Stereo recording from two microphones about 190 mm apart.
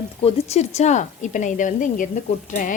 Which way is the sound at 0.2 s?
35° left (ahead or behind).